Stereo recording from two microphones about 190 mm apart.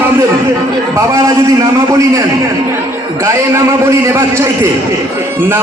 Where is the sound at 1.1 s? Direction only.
15° right (ahead or behind).